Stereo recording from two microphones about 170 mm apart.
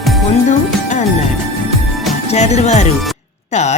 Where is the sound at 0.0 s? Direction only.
Centre (ahead or behind).